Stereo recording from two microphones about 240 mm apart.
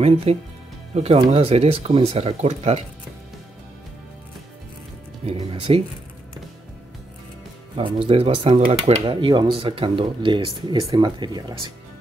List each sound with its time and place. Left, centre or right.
0.0 s speech: right
5.2 s speech: right
7.7 s speech: right